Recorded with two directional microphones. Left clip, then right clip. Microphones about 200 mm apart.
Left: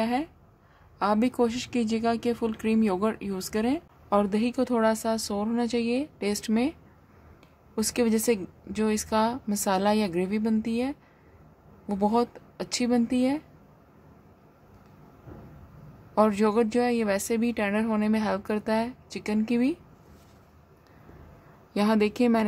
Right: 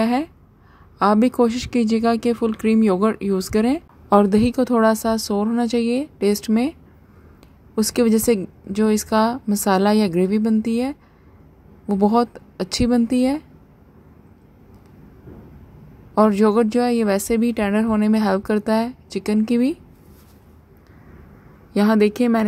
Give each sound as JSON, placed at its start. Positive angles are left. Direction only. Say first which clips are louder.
{"t": 0.0, "sound": "a woman's voice", "louder": "right 7 dB", "side_deg": -20}
{"t": 16.2, "sound": "a woman's voice", "louder": "right 7 dB", "side_deg": -15}
{"t": 21.7, "sound": "a woman's voice", "louder": "right 7 dB", "side_deg": -10}